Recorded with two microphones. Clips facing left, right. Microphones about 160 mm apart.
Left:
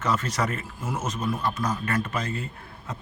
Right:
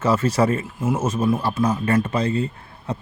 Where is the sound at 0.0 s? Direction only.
30° right (ahead or behind).